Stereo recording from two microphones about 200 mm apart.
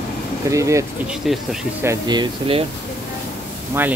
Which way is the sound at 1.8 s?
15° right (ahead or behind).